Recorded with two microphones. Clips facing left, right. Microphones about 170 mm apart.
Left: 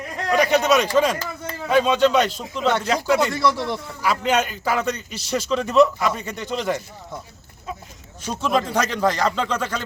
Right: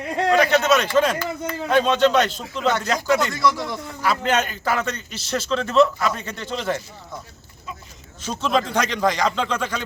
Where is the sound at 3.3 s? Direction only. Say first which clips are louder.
Left 1 dB; 30° left (ahead or behind).